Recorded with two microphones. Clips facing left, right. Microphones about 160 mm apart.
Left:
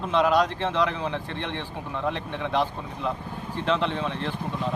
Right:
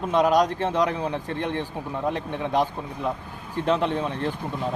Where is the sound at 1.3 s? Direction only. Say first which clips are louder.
Right 5 dB; 45° right (ahead or behind).